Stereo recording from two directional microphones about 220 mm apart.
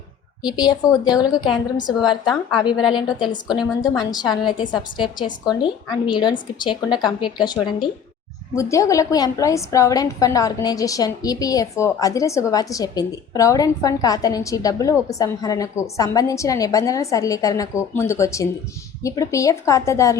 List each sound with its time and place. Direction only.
0.4 s a woman's voice: 20° left (ahead or behind)